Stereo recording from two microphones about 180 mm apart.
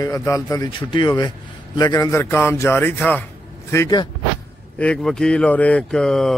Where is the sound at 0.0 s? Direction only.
15° left (ahead or behind).